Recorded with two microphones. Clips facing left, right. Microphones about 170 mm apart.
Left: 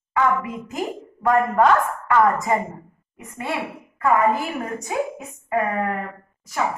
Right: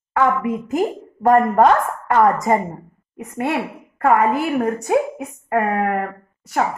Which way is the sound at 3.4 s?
60° right (ahead or behind).